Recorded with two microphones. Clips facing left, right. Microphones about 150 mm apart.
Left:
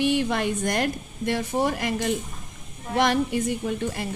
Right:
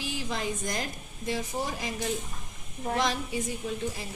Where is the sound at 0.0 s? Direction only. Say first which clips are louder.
Left 10 dB; 65° left (ahead or behind).